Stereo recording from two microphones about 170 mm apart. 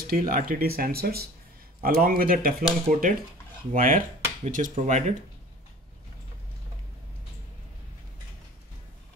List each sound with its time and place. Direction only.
0.0 s speech: 60° right (ahead or behind); by 5.1 s 40° right (ahead or behind)